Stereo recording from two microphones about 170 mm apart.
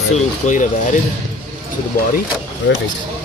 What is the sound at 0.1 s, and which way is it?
Speech, 45° left (ahead or behind).